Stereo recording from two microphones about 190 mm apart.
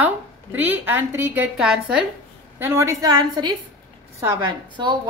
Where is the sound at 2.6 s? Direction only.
15° right (ahead or behind).